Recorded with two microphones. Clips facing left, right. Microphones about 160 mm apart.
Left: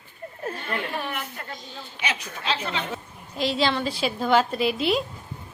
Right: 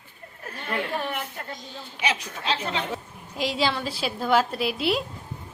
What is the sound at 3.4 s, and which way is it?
A woman's voice, 10° right (ahead or behind).